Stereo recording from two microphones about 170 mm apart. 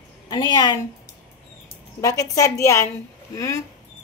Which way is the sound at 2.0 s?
20° left (ahead or behind).